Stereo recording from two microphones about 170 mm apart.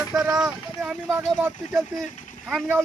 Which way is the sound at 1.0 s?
10° right (ahead or behind).